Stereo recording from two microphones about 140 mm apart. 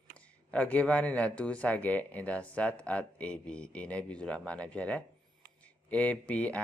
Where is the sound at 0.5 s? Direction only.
10° left (ahead or behind).